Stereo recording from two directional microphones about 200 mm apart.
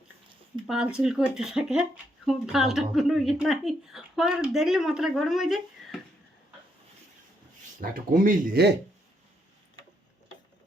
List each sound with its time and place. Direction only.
0.7 s speech: 5° right (ahead or behind)
7.8 s speech: 45° right (ahead or behind)